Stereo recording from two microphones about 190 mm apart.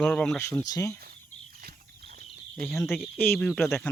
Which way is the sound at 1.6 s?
50° right (ahead or behind).